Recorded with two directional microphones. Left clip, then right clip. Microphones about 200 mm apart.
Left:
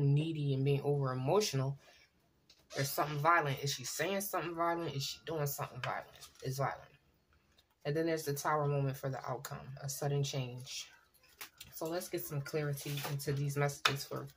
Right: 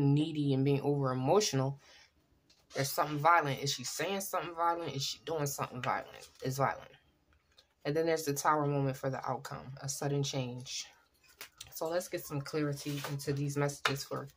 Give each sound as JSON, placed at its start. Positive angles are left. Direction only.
{"t": 0.0, "sound": "speech", "side_deg": -25}
{"t": 2.7, "sound": "speech", "side_deg": -20}
{"t": 7.8, "sound": "speech", "side_deg": -25}